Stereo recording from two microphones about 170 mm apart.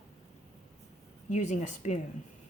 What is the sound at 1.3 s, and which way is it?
Speech, 45° left (ahead or behind).